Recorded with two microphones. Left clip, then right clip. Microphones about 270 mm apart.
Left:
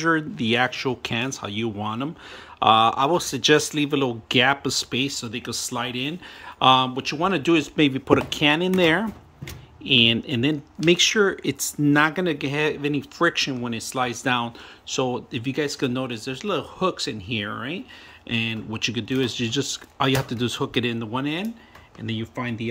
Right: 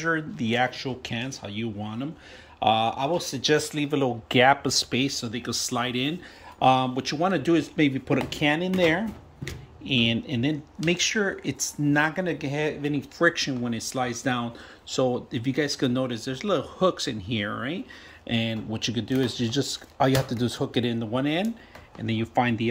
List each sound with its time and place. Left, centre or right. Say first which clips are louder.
0.0 s speech: left 5 dB; centre
11.5 s speech: left 4 dB; left
11.9 s speech: left 4 dB; centre